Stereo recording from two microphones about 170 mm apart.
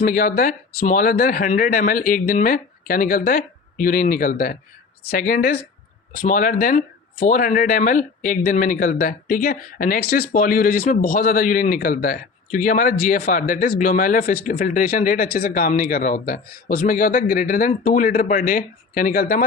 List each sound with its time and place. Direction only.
0.0 s a man's voice: 55° left (ahead or behind)